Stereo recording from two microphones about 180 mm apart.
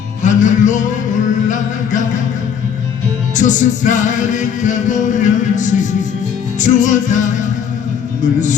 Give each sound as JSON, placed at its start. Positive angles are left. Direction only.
{"t": 0.2, "sound": "music", "side_deg": 45}
{"t": 3.3, "sound": "music", "side_deg": 45}